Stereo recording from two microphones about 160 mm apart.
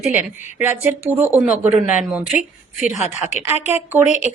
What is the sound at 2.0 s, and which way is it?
Speech, centre (ahead or behind).